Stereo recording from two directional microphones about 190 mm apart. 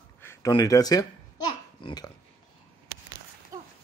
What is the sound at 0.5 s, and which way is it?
Speech, 20° left (ahead or behind).